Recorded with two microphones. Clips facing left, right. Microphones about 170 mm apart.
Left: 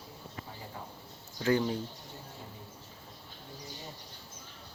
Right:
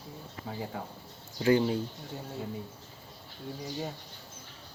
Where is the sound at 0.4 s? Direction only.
90° right.